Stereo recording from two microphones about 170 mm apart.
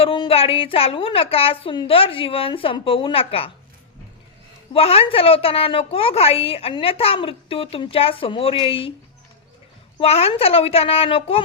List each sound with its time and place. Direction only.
0.0 s a woman's voice: 30° left (ahead or behind)
4.7 s a woman's voice: 35° left (ahead or behind)
10.0 s a woman's voice: 35° left (ahead or behind)